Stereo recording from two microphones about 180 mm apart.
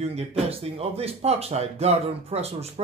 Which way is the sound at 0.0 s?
35° right (ahead or behind).